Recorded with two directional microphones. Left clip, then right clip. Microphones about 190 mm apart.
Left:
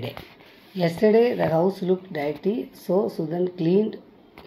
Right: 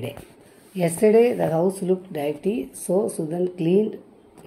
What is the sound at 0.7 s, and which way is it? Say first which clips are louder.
Speech: right 2 dB; 10° right (ahead or behind).